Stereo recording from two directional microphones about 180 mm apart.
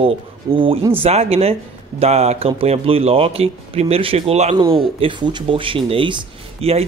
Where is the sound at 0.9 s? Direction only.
35° right (ahead or behind).